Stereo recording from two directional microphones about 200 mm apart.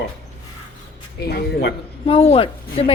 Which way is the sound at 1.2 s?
50° left (ahead or behind).